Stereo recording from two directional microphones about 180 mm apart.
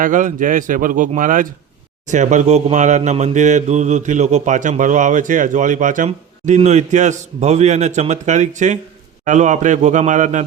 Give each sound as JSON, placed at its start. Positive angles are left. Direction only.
{"t": 0.0, "sound": "speech", "side_deg": -45}